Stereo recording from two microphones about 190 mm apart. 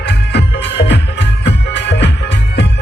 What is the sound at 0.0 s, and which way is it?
Music, 65° left (ahead or behind).